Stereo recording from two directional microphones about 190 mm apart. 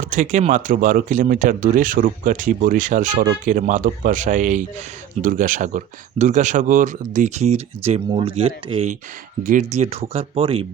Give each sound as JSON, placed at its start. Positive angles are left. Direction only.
{"t": 0.0, "sound": "speech", "side_deg": -40}
{"t": 9.4, "sound": "speech", "side_deg": -45}
{"t": 9.7, "sound": "speech", "side_deg": -35}